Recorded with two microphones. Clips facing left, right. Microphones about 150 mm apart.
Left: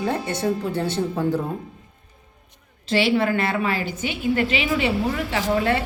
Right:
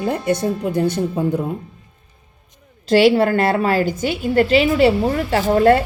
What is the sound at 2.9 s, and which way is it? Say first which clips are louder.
A woman's voice: right 7 dB; 45° right (ahead or behind).